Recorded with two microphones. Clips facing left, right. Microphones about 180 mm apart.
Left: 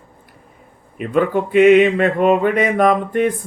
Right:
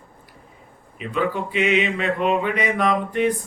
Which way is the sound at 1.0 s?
50° left (ahead or behind).